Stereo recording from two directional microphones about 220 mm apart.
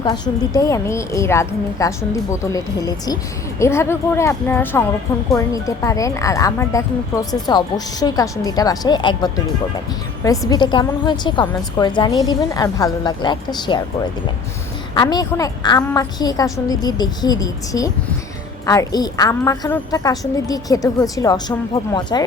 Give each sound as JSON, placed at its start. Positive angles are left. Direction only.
{"t": 0.0, "sound": "a woman's voice", "side_deg": 20}
{"t": 14.9, "sound": "a woman's voice", "side_deg": 20}